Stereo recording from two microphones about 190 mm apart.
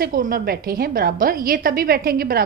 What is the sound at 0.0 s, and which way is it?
A woman's voice, 50° right (ahead or behind).